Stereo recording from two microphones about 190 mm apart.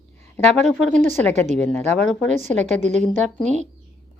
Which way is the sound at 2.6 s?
35° right (ahead or behind).